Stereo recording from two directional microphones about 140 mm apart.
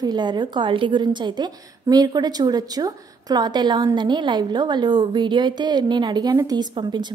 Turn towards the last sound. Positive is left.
turn(degrees=-30)  # may be behind; listen again after turning